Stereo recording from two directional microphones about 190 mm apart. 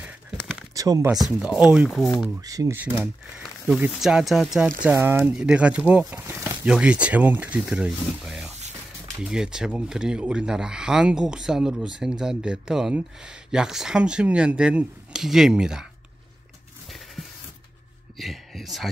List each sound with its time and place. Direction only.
0.7 s speech: 20° right (ahead or behind)
1.4 s speech: 5° right (ahead or behind)
2.4 s speech: 20° right (ahead or behind); by 4.6 s centre (ahead or behind)
4.8 s speech: 15° right (ahead or behind)
16.9 s a sound: centre (ahead or behind)